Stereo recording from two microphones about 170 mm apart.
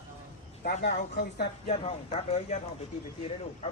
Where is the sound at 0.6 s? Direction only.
70° left (ahead or behind).